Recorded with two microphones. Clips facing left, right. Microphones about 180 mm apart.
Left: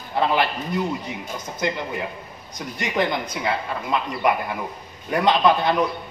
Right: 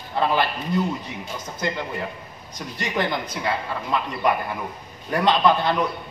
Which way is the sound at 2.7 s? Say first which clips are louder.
Left 2 dB; 15° left (ahead or behind).